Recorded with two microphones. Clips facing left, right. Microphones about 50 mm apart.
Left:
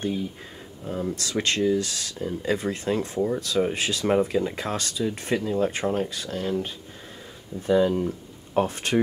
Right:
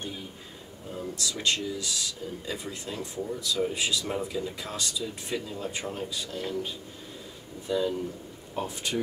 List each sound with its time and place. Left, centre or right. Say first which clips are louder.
1.1 s speech: left 1 dB; left